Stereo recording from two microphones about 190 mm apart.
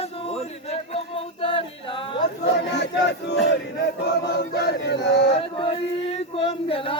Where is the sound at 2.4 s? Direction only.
65° left (ahead or behind).